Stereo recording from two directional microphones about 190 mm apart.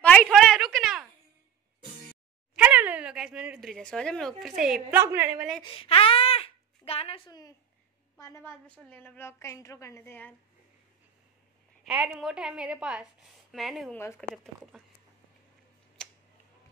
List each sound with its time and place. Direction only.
0.0 s a sound: 5° left (ahead or behind)
2.5 s speech: 10° right (ahead or behind)
5.0 s a woman's voice: 10° right (ahead or behind)
5.6 s a sound: 30° left (ahead or behind)
8.2 s a woman's voice: 15° left (ahead or behind)
11.8 s a woman's voice: 5° right (ahead or behind)
13.9 s a woman's voice: 15° left (ahead or behind)
14.3 s a woman's voice: centre (ahead or behind)
16.0 s tick-tock: 5° left (ahead or behind)